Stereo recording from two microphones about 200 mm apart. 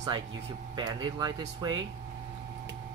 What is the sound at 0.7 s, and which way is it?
Speech, 20° right (ahead or behind).